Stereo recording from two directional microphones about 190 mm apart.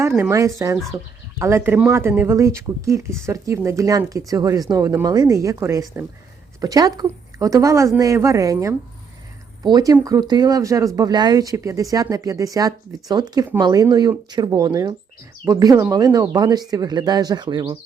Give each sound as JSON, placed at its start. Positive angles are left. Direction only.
{"t": 0.2, "sound": "speech", "side_deg": -15}